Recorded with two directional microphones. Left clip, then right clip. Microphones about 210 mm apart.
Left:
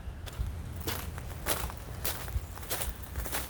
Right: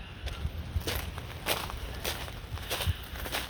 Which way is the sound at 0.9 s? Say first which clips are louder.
Right 3 dB; 5° left (ahead or behind).